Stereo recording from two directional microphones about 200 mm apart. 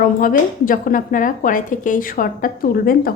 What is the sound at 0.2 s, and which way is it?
A woman's voice, 45° left (ahead or behind).